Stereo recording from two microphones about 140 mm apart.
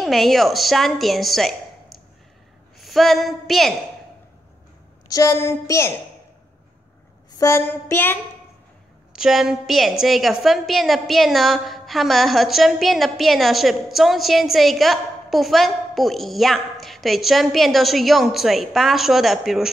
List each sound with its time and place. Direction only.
0.0 s a woman's voice: centre (ahead or behind)
2.8 s a woman's voice: centre (ahead or behind)
5.1 s a woman's voice: 20° left (ahead or behind)
7.3 s a sound: 20° left (ahead or behind)
9.1 s a woman's voice: 5° right (ahead or behind)